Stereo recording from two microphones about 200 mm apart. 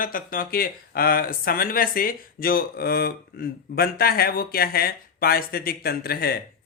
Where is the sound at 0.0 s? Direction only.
45° left (ahead or behind).